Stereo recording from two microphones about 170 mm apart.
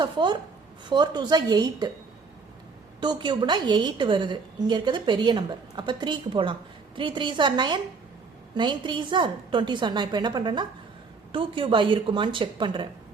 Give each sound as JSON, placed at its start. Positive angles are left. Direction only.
{"t": 0.0, "sound": "a woman's voice", "side_deg": -25}
{"t": 3.0, "sound": "a woman's voice", "side_deg": -25}